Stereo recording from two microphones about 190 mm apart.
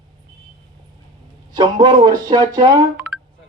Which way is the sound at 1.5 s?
20° right (ahead or behind).